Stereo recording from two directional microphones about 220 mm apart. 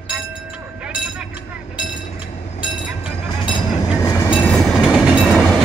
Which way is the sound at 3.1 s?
25° left (ahead or behind).